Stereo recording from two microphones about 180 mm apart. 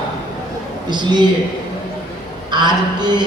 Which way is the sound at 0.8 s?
25° right (ahead or behind).